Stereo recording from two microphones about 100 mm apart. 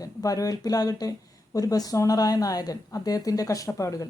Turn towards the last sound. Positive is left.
turn(degrees=30)  # may be behind; listen again after turning